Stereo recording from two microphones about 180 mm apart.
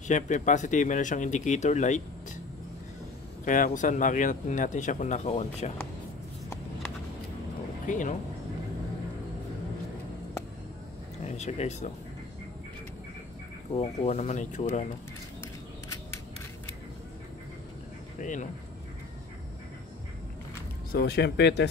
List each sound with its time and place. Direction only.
0.1 s speech: 45° left (ahead or behind)
3.4 s speech: 45° left (ahead or behind)
7.8 s speech: 45° left (ahead or behind)
11.2 s speech: 40° left (ahead or behind)
13.7 s speech: 40° left (ahead or behind)
18.2 s speech: 45° left (ahead or behind)
20.9 s speech: 65° left (ahead or behind)